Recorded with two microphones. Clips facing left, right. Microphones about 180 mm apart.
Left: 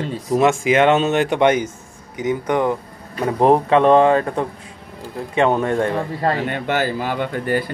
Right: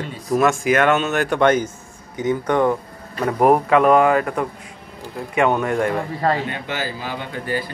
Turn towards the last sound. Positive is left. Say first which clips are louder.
# left 5 dB
turn(degrees=55)  # may be behind; listen again after turning